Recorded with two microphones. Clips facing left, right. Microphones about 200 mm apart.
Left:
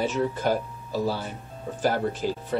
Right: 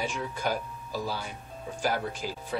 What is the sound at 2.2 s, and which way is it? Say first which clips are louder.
Speech: left 8 dB; 5° right (ahead or behind).